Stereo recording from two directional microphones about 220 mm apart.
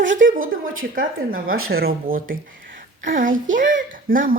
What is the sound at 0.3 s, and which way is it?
A woman's voice, 65° right (ahead or behind).